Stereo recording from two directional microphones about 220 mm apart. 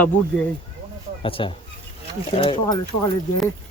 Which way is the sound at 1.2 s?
25° left (ahead or behind).